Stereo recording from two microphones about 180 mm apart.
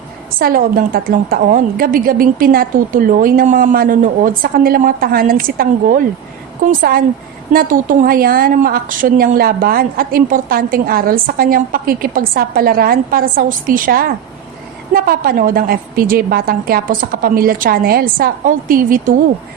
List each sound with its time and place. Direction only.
0.3 s a woman's voice: 55° right (ahead or behind)